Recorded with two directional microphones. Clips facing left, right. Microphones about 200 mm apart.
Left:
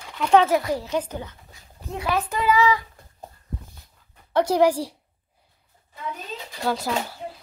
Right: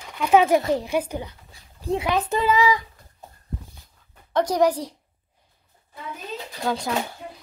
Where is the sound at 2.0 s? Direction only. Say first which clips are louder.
Left 1 dB; 20° right (ahead or behind).